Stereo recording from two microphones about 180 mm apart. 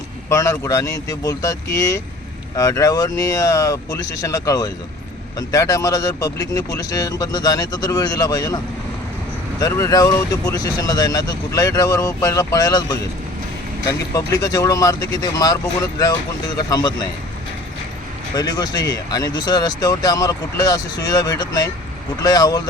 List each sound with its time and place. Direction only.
0.3 s speech: 15° left (ahead or behind)
16.6 s speech: 20° left (ahead or behind)
18.3 s speech: 25° left (ahead or behind)